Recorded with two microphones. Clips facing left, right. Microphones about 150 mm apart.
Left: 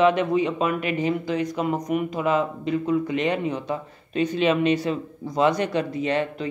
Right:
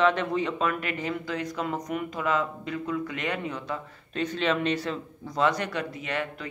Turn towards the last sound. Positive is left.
turn(degrees=25)  # may be behind; listen again after turning